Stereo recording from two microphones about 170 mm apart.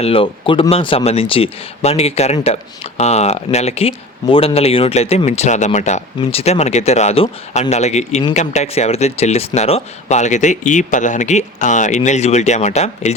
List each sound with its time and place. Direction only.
0.0 s speech: 35° left (ahead or behind)